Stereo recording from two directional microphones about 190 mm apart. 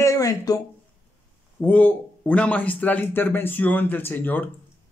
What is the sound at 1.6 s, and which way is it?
A man's voice, 10° left (ahead or behind).